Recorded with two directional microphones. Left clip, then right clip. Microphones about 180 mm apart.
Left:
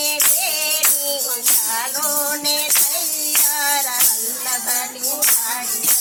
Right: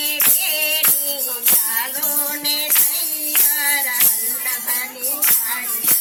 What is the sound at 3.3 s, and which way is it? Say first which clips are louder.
Music: left 1 dB; centre (ahead or behind).